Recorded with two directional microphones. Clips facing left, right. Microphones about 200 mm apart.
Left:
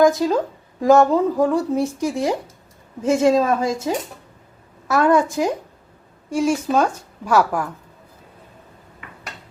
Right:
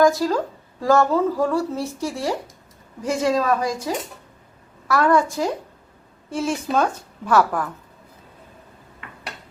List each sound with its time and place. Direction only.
0.0 s a woman's voice: 20° left (ahead or behind)